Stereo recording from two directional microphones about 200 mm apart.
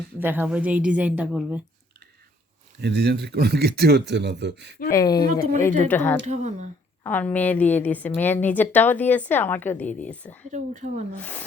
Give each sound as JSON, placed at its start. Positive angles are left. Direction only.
{"t": 0.2, "sound": "a woman's voice", "side_deg": -10}
{"t": 2.8, "sound": "speech", "side_deg": -55}
{"t": 4.9, "sound": "speech", "side_deg": 20}
{"t": 6.2, "sound": "speech", "side_deg": -35}
{"t": 7.0, "sound": "speech", "side_deg": 10}
{"t": 10.5, "sound": "speech", "side_deg": -40}
{"t": 11.2, "sound": "speech", "side_deg": 10}